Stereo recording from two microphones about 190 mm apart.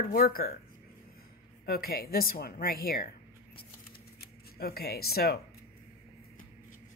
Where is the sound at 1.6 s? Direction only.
55° left (ahead or behind).